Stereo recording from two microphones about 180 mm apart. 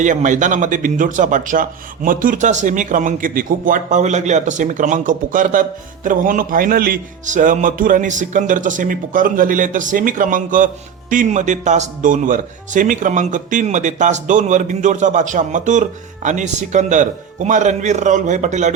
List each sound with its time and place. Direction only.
0.0 s speech: 45° right (ahead or behind)